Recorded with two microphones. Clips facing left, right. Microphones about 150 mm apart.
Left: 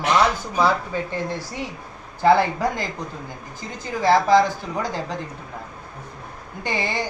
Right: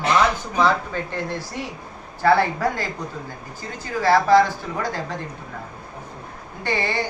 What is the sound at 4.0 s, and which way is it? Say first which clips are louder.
Speech: right 1 dB; 15° left (ahead or behind).